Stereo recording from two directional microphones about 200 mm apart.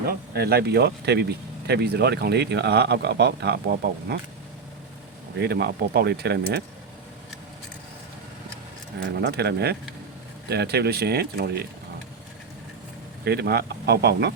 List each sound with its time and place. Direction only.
0.1 s speech: 50° right (ahead or behind)
5.4 s speech: 55° right (ahead or behind)
9.0 s speech: 65° right (ahead or behind)
13.2 s speech: 55° right (ahead or behind)